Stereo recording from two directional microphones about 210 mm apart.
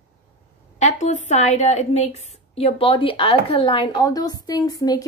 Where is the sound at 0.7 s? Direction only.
35° left (ahead or behind).